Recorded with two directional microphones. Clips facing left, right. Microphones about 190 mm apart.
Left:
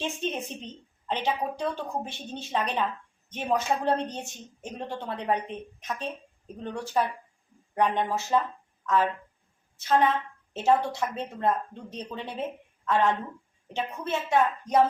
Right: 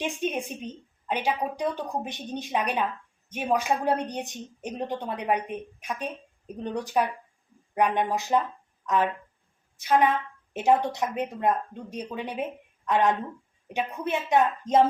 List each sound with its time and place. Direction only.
0.0 s speech: 15° right (ahead or behind)
9.7 s speech: 10° right (ahead or behind)